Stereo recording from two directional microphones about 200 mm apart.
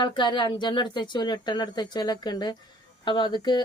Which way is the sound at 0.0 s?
25° left (ahead or behind).